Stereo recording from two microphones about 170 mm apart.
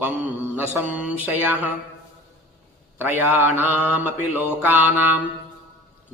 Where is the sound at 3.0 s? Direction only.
10° right (ahead or behind).